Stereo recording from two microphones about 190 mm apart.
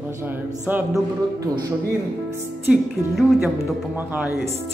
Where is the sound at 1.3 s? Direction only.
20° right (ahead or behind).